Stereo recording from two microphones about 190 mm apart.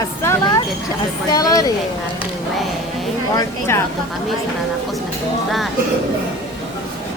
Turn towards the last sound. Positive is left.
turn(degrees=0)  # may be behind; listen again after turning